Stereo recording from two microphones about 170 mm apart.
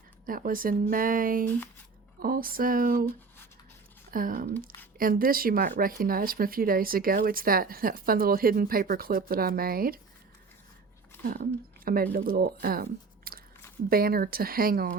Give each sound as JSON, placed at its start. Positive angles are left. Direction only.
{"t": 0.3, "sound": "speech", "side_deg": -55}
{"t": 4.1, "sound": "speech", "side_deg": -55}
{"t": 11.2, "sound": "speech", "side_deg": -60}